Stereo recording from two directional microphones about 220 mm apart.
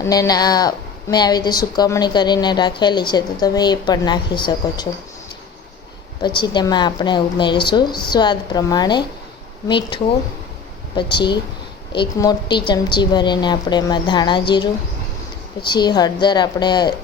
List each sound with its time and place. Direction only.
0.0 s a woman's voice: 15° left (ahead or behind)
6.2 s a woman's voice: 20° left (ahead or behind)
15.7 s a woman's voice: 20° left (ahead or behind)